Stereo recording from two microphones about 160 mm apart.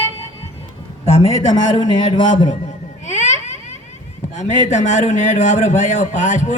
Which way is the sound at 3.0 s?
45° left (ahead or behind).